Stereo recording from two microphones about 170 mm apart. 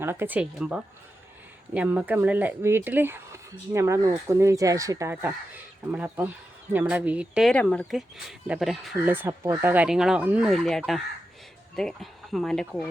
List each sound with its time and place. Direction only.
0.0 s speech: 15° right (ahead or behind)
7.5 s speech: 5° left (ahead or behind)
9.0 s speech: 10° right (ahead or behind)